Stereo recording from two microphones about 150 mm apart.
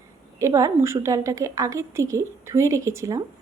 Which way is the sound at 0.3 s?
20° right (ahead or behind).